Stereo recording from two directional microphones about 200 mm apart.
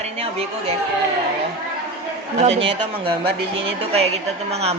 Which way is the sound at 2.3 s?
30° right (ahead or behind).